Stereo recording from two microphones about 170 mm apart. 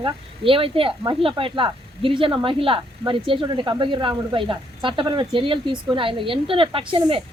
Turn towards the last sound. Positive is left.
turn(degrees=-30)  # may be behind; listen again after turning